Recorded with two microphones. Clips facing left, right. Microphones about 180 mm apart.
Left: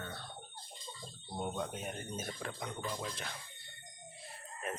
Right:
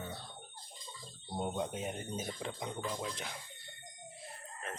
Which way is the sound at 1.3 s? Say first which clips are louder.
Right 2 dB; 20° right (ahead or behind).